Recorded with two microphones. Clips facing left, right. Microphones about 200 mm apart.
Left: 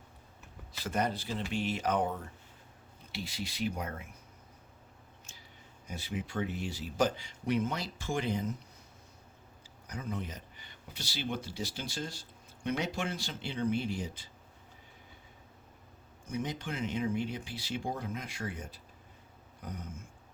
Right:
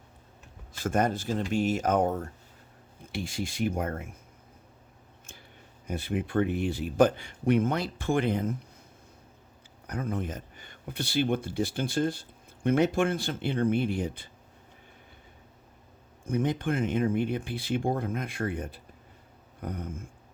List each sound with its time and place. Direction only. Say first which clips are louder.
0.7 s speech: right 6 dB; 50° right (ahead or behind)
5.2 s a sound: right 5 dB; 55° right (ahead or behind)
5.9 s speech: right 8 dB; 55° right (ahead or behind)
9.8 s speech: right 6 dB; 55° right (ahead or behind)
16.2 s speech: right 9 dB; 55° right (ahead or behind)